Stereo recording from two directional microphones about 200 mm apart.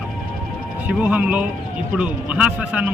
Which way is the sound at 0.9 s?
5° right (ahead or behind).